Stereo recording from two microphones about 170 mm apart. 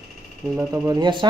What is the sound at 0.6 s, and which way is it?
Speech, 20° right (ahead or behind).